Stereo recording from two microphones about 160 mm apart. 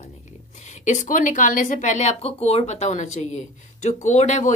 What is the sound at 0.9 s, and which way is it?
Speech, 50° left (ahead or behind).